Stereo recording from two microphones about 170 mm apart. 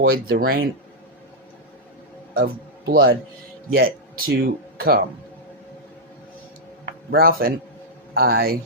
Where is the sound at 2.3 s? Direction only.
60° right (ahead or behind).